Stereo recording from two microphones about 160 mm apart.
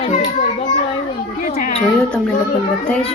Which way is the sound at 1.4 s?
60° left (ahead or behind).